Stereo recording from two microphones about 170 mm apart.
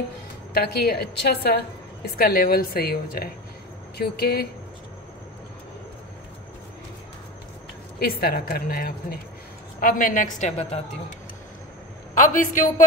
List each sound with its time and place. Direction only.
0.6 s a woman's voice: 70° left (ahead or behind)
8.0 s a woman's voice: 65° left (ahead or behind); by 10.8 s 45° left (ahead or behind)
12.1 s a woman's voice: 50° left (ahead or behind)